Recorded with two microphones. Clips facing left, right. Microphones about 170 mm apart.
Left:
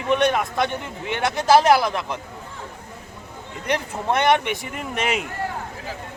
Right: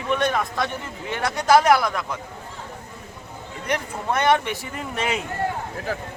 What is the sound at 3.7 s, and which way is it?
Speech, 20° left (ahead or behind).